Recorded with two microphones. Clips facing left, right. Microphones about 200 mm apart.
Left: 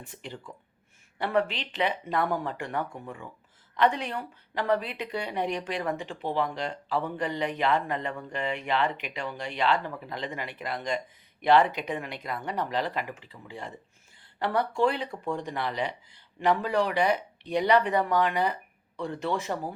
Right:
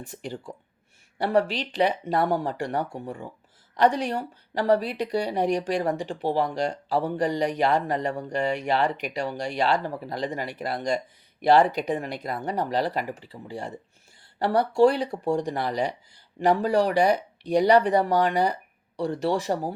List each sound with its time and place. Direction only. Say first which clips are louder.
0.1 s speech: right 6 dB; 40° right (ahead or behind)